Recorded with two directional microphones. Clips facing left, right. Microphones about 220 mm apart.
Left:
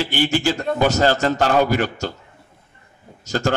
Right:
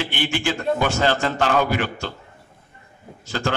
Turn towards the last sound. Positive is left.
turn(degrees=45)  # may be behind; listen again after turning